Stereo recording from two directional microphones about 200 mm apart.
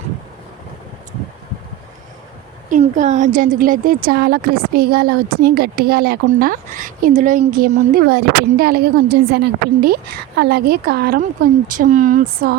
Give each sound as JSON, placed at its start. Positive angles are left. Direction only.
{"t": 2.6, "sound": "a woman's voice", "side_deg": -40}
{"t": 11.8, "sound": "speech", "side_deg": -40}